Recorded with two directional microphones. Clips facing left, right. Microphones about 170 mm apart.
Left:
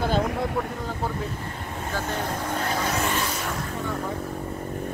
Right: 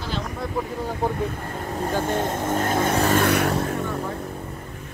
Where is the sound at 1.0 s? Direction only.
20° right (ahead or behind).